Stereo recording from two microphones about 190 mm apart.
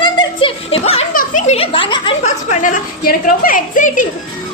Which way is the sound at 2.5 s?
45° left (ahead or behind).